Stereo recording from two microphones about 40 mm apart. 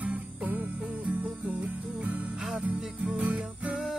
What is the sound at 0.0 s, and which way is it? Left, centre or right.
Music, right.